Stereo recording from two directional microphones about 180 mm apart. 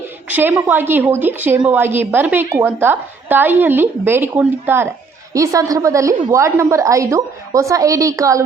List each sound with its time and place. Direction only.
0.3 s a woman's voice: 10° right (ahead or behind)